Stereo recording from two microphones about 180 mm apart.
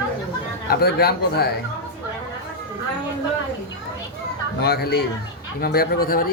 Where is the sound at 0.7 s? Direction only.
60° left (ahead or behind).